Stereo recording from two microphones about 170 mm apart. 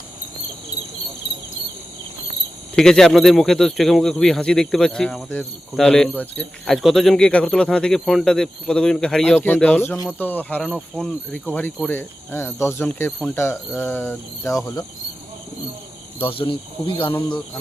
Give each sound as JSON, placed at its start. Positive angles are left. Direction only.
{"t": 2.7, "sound": "speech", "side_deg": 5}
{"t": 16.1, "sound": "speech", "side_deg": 30}